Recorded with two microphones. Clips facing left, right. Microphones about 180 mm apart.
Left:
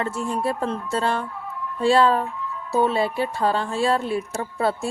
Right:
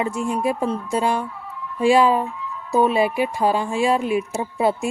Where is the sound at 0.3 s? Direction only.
10° right (ahead or behind).